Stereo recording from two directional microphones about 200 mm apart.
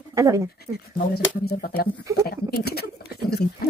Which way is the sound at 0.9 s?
50° left (ahead or behind).